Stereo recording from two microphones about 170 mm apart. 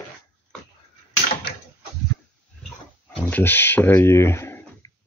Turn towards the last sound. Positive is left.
turn(degrees=15)  # may be behind; listen again after turning